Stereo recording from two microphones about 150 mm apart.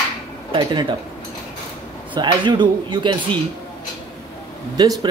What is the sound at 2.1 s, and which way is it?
Speech, 30° right (ahead or behind).